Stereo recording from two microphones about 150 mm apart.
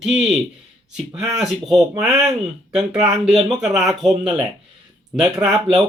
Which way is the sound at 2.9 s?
45° right (ahead or behind).